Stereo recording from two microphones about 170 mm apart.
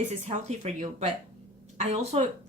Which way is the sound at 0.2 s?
40° right (ahead or behind).